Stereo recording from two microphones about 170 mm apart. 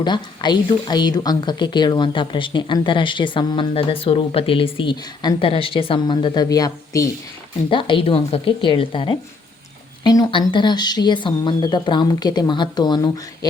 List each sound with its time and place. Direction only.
0.0 s a woman's voice: 25° left (ahead or behind)